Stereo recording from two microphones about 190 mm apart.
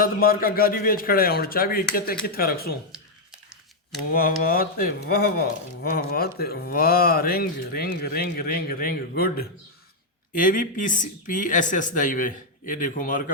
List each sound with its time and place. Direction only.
0.0 s speech: 50° left (ahead or behind)
4.1 s speech: 50° left (ahead or behind)